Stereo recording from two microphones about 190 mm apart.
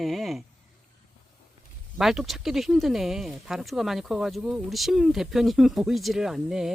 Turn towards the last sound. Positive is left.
turn(degrees=0)  # may be behind; listen again after turning